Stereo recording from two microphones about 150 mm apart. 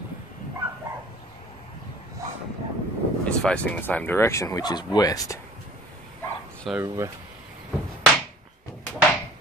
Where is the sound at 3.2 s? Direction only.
5° left (ahead or behind); by 5.4 s 25° left (ahead or behind).